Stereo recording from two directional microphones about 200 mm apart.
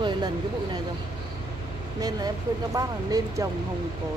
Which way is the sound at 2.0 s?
20° right (ahead or behind).